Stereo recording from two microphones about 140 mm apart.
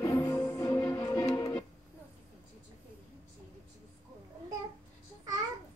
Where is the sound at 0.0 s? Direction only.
20° left (ahead or behind).